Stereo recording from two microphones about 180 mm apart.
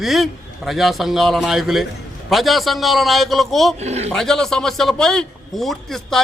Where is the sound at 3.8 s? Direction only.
35° right (ahead or behind).